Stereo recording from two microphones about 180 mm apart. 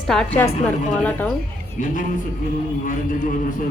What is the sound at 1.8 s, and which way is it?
Speech, 50° left (ahead or behind).